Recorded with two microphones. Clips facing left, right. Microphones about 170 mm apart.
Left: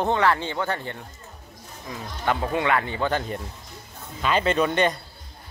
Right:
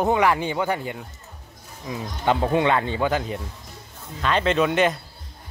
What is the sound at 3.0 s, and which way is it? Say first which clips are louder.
Speech: right 2 dB; 5° right (ahead or behind).